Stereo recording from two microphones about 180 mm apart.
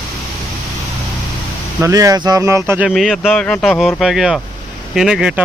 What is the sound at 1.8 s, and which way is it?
Speech, 20° right (ahead or behind).